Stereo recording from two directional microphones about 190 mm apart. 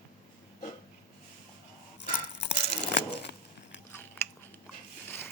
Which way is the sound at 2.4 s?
65° left (ahead or behind).